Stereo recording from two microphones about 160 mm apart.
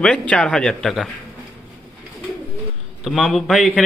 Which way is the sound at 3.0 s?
Centre (ahead or behind).